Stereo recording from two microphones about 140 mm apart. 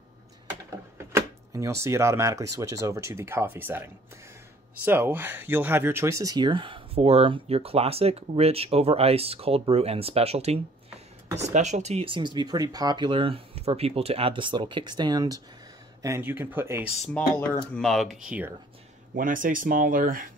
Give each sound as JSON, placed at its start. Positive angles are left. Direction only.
{"t": 0.9, "sound": "speech", "side_deg": -20}
{"t": 17.7, "sound": "speech", "side_deg": 0}
{"t": 19.1, "sound": "speech", "side_deg": -75}